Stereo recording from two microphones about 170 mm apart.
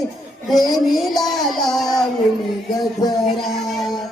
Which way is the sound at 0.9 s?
Centre (ahead or behind).